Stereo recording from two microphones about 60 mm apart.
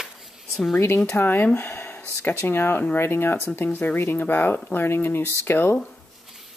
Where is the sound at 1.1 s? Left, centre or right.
Left.